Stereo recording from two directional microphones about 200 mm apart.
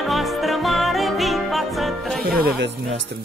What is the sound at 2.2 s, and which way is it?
Speech, 55° right (ahead or behind).